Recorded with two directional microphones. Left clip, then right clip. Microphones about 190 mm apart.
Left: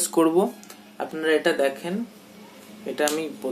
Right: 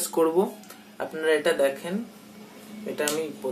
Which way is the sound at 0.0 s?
55° left (ahead or behind).